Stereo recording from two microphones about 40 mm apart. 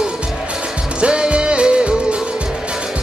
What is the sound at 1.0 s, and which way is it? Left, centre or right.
Music, right.